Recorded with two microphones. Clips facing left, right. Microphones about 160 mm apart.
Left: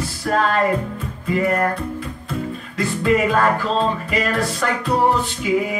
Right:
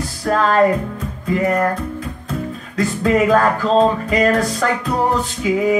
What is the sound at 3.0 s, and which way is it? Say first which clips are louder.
Music: right 3 dB; 40° right (ahead or behind).